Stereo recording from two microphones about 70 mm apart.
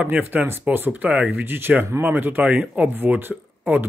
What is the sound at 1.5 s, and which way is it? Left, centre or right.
Speech, right.